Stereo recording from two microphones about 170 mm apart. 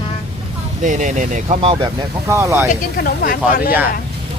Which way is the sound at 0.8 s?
45° right (ahead or behind).